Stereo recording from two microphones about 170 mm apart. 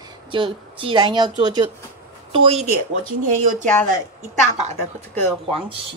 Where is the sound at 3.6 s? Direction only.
10° left (ahead or behind).